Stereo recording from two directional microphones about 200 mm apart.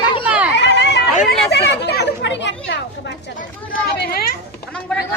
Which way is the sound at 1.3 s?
55° left (ahead or behind).